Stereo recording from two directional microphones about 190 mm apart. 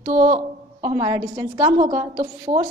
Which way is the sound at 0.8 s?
20° right (ahead or behind).